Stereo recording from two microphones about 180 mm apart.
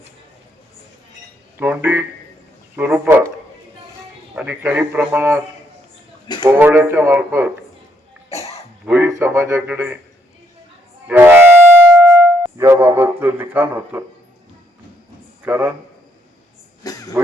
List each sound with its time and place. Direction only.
1.5 s speech: 10° right (ahead or behind)
4.4 s speech: 10° right (ahead or behind)
6.4 s speech: 15° right (ahead or behind)
8.9 s speech: 15° right (ahead or behind)
11.1 s music: 10° right (ahead or behind)
15.4 s a man's voice: 10° right (ahead or behind)
16.8 s a sound: 20° left (ahead or behind)